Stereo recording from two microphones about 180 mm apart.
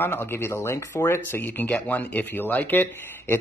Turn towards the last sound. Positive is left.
turn(degrees=10)  # may be behind; listen again after turning